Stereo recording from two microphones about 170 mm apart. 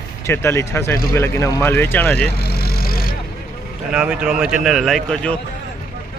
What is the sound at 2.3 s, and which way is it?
Vehicle, 65° left (ahead or behind).